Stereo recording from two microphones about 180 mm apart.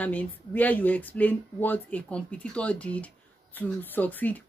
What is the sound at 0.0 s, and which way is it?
Speech, 10° left (ahead or behind).